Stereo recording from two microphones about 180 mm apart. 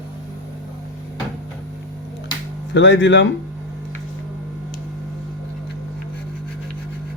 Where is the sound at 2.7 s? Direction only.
90° left.